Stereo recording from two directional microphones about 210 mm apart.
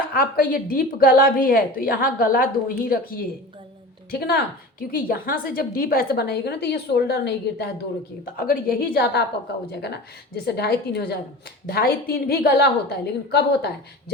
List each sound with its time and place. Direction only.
0.1 s a woman's voice: 45° left (ahead or behind)